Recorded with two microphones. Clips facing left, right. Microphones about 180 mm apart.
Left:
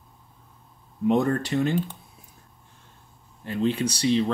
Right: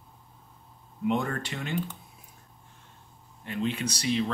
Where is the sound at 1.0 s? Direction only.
40° left (ahead or behind).